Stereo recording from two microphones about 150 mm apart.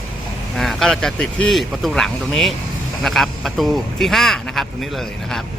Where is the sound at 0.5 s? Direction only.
Centre (ahead or behind).